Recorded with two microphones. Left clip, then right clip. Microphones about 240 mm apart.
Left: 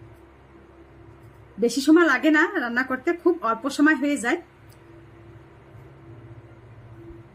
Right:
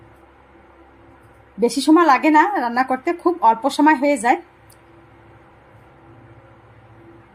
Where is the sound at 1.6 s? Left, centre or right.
Centre.